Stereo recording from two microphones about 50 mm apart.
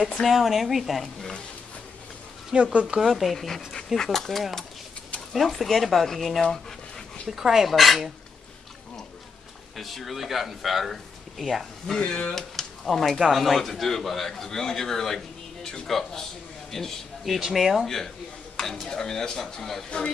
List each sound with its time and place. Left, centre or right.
0.2 s speech: centre
2.5 s speech: right
3.0 s speech: centre
7.2 s speech: centre
9.8 s speech: centre
12.0 s a man's voice: centre
17.4 s speech: centre
17.8 s speech: centre